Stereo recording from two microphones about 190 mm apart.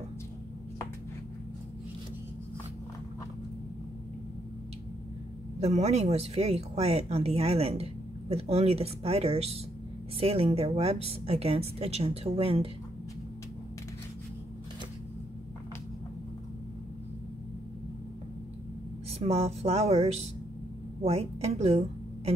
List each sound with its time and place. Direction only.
5.6 s speech: 35° right (ahead or behind)
19.1 s a woman's voice: 35° right (ahead or behind)